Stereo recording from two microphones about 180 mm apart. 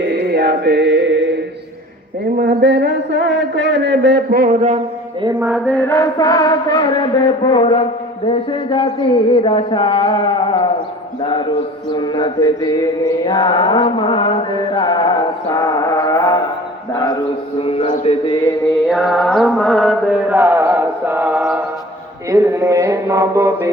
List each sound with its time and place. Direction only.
0.0 s chant: 70° right (ahead or behind)
2.4 s speech: 70° right (ahead or behind); by 4.8 s 45° right (ahead or behind)
5.4 s mantra: 5° right (ahead or behind)
5.6 s mantra: 10° left (ahead or behind); by 18.3 s 30° left (ahead or behind)
18.9 s mantra: centre (ahead or behind); by 23.6 s 15° right (ahead or behind)